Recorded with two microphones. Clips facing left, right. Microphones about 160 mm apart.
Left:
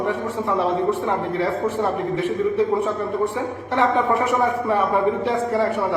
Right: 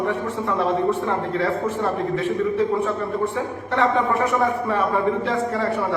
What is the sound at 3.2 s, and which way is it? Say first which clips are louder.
A man's voice: left 1 dB; 15° left (ahead or behind).